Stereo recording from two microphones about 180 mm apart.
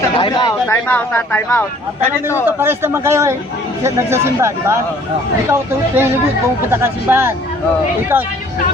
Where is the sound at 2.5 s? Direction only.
15° right (ahead or behind).